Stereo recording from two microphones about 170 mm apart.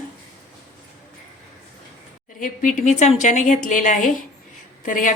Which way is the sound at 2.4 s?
50° left (ahead or behind).